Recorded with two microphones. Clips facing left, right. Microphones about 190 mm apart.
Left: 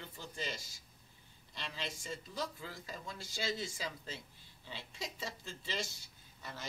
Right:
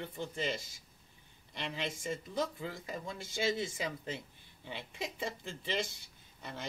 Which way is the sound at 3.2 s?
55° right (ahead or behind).